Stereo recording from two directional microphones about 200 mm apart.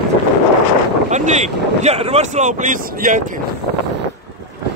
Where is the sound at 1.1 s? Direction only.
35° right (ahead or behind).